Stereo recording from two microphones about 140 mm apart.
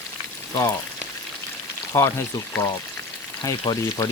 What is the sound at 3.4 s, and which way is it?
Speech, 25° left (ahead or behind).